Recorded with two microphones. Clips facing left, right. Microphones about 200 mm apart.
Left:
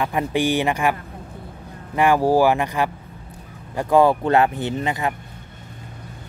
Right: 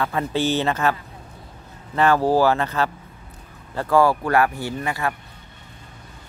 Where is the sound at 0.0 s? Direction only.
15° left (ahead or behind).